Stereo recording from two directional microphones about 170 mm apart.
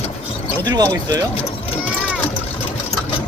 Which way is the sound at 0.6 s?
20° right (ahead or behind).